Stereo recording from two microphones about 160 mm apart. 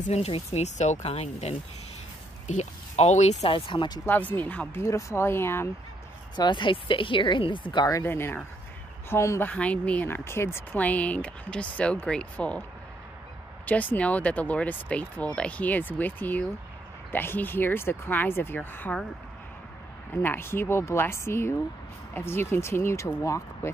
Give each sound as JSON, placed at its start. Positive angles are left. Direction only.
{"t": 0.0, "sound": "speech", "side_deg": 40}
{"t": 3.5, "sound": "speech", "side_deg": 30}
{"t": 4.0, "sound": "speech", "side_deg": 10}
{"t": 6.3, "sound": "speech", "side_deg": 30}
{"t": 13.7, "sound": "speech", "side_deg": 10}
{"t": 20.2, "sound": "speech", "side_deg": 15}